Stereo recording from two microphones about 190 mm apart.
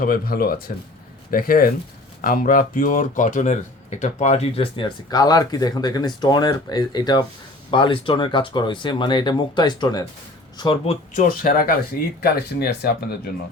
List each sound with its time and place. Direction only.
0.0 s speech: 50° left (ahead or behind); by 10.9 s 25° left (ahead or behind)
11.1 s speech: 45° left (ahead or behind)